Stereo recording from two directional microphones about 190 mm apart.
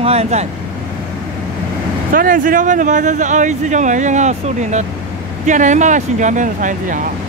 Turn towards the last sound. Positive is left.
turn(degrees=-40)  # may be behind; listen again after turning